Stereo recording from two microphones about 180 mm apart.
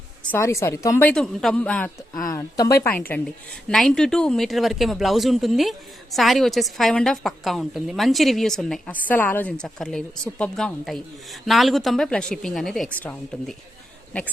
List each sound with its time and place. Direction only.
0.3 s a woman's voice: 15° left (ahead or behind)
2.1 s speech: 20° left (ahead or behind)
3.7 s speech: 5° left (ahead or behind)